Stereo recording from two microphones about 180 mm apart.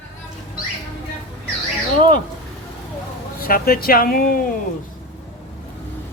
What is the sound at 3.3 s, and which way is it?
Speech, 55° left (ahead or behind).